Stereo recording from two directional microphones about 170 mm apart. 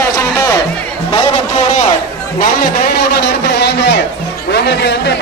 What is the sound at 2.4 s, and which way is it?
Speech, 65° left (ahead or behind).